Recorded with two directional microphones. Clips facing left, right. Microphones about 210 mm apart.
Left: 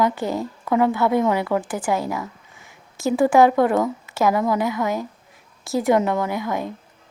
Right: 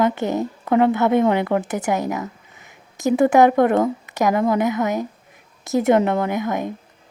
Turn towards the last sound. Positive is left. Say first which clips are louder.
# right 2 dB
turn(degrees=-20)  # may be behind; listen again after turning